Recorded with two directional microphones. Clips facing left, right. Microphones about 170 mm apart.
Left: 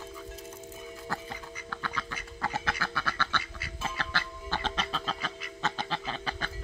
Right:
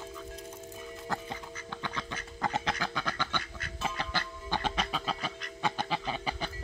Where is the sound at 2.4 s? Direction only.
20° right (ahead or behind).